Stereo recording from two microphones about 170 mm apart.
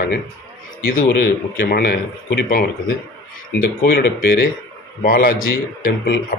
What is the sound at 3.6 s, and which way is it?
Speech, 60° left (ahead or behind).